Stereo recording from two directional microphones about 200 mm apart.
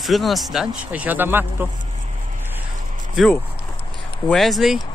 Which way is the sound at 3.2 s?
Centre (ahead or behind).